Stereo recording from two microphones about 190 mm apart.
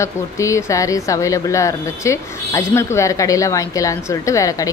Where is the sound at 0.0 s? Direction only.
15° left (ahead or behind).